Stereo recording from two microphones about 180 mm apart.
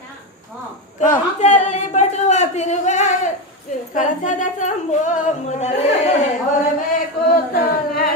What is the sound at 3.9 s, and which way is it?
Speech, 45° left (ahead or behind).